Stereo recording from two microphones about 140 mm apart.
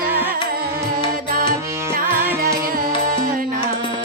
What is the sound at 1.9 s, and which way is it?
Music, 90° right.